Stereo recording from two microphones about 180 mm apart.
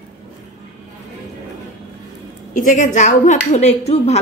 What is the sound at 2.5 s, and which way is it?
A woman's voice, 45° left (ahead or behind).